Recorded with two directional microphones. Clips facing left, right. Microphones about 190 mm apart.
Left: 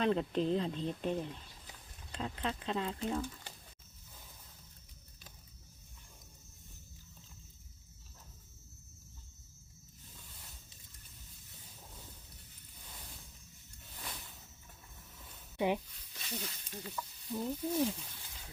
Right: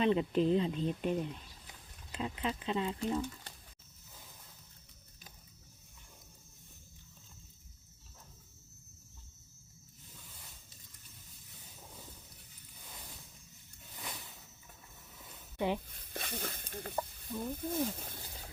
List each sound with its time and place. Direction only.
0.0 s speech: 5° right (ahead or behind)
13.9 s a sound: 5° right (ahead or behind)
15.5 s speech: 15° left (ahead or behind)
15.9 s snake: 55° right (ahead or behind)
17.4 s speech: 50° right (ahead or behind)